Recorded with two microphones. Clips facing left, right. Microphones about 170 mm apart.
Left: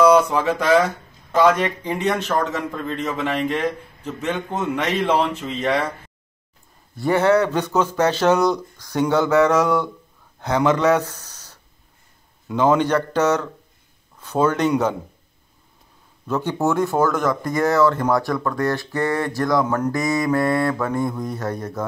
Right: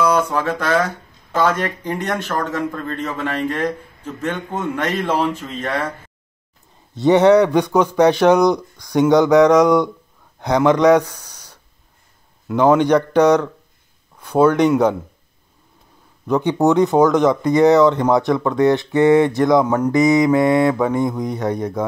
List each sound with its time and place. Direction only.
0.0 s speech: 10° left (ahead or behind)
5.1 s speech: 10° right (ahead or behind)
5.4 s speech: 10° left (ahead or behind)
7.0 s speech: 20° right (ahead or behind)
16.3 s speech: 15° right (ahead or behind)
19.6 s speech: 10° right (ahead or behind)